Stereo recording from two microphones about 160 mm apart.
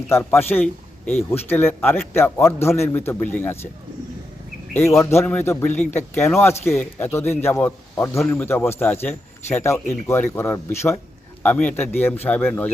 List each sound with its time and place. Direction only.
0.1 s speech: 10° left (ahead or behind)
4.9 s speech: 15° left (ahead or behind)